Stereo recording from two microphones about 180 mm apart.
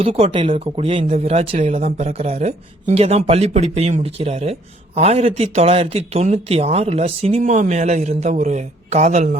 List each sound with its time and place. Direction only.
0.0 s speech: 30° right (ahead or behind)